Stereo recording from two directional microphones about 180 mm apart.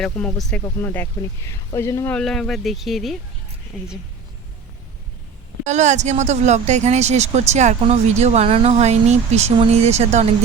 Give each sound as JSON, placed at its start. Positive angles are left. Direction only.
{"t": 0.0, "sound": "speech", "side_deg": 5}
{"t": 2.1, "sound": "speech", "side_deg": 5}
{"t": 5.6, "sound": "speech", "side_deg": -40}